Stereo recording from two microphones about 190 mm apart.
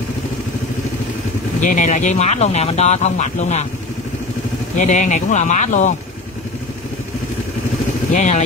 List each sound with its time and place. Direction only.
1.6 s speech: 40° left (ahead or behind)
4.7 s speech: 40° left (ahead or behind)
8.1 s speech: 40° left (ahead or behind)